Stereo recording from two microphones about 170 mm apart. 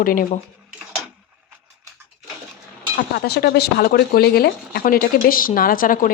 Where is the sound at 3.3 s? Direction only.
70° left (ahead or behind).